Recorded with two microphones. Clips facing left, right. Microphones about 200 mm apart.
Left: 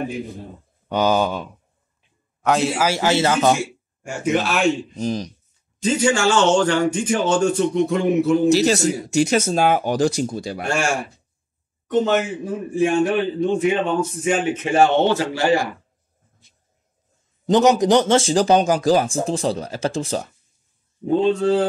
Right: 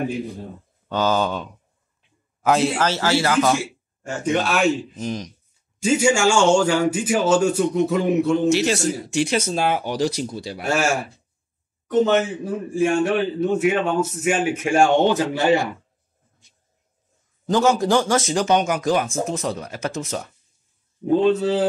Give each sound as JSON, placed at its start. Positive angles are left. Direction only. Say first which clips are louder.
{"t": 0.8, "sound": "speech", "louder": "left 2 dB", "side_deg": 15}
{"t": 2.4, "sound": "speech", "louder": "even", "side_deg": 0}
{"t": 4.0, "sound": "speech", "louder": "left 1 dB", "side_deg": 10}
{"t": 4.9, "sound": "speech", "louder": "left 4 dB", "side_deg": 35}
{"t": 5.8, "sound": "speech", "louder": "right 1 dB", "side_deg": -10}
{"t": 8.5, "sound": "speech", "louder": "left 3 dB", "side_deg": 35}
{"t": 10.6, "sound": "speech", "louder": "right 2 dB", "side_deg": -5}
{"t": 12.0, "sound": "speech", "louder": "right 2 dB", "side_deg": 10}
{"t": 13.2, "sound": "speech", "louder": "even", "side_deg": -5}
{"t": 17.5, "sound": "speech", "louder": "left 3 dB", "side_deg": 20}
{"t": 21.0, "sound": "speech", "louder": "even", "side_deg": -5}